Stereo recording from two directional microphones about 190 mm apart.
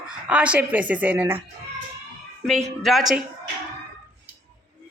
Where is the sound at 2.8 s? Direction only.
Centre (ahead or behind).